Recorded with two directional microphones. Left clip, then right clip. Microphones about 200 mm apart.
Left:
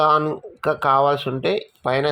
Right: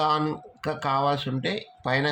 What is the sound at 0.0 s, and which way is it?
Speech, 25° left (ahead or behind).